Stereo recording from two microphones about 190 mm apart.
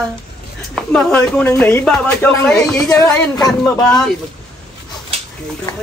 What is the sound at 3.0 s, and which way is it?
Speech, 20° left (ahead or behind).